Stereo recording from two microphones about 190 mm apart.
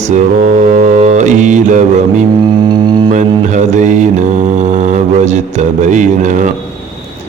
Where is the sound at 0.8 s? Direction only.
35° right (ahead or behind).